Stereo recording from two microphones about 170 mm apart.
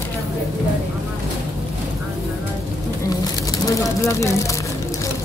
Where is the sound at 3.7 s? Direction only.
20° left (ahead or behind).